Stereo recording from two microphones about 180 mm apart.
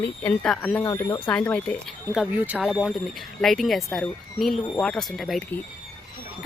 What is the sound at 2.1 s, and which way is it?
Speech, 5° right (ahead or behind).